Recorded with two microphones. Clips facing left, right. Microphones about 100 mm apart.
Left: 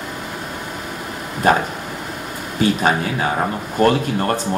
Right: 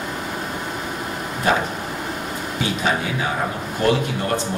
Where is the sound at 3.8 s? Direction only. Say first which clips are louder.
Left 4 dB; 45° left (ahead or behind).